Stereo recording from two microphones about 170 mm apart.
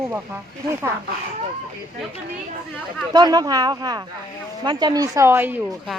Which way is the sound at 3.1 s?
25° right (ahead or behind).